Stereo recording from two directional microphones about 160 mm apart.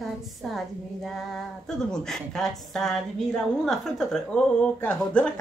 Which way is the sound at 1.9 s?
5° left (ahead or behind).